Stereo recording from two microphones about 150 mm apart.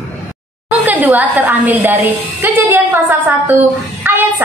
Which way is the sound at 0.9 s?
10° right (ahead or behind).